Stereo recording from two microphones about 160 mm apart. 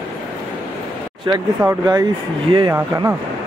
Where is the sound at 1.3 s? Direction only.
20° right (ahead or behind).